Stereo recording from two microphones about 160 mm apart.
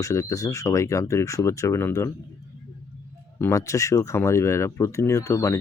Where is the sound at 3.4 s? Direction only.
20° left (ahead or behind).